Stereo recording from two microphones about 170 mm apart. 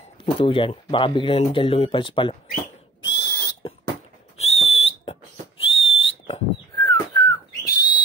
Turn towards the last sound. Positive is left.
turn(degrees=25)  # may be behind; listen again after turning